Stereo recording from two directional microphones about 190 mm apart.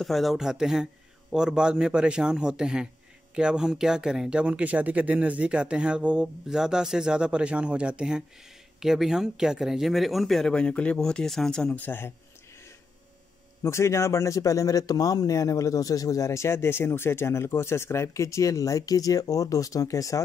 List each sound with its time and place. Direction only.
0.0 s speech: centre (ahead or behind)
13.6 s a man's voice: 15° left (ahead or behind)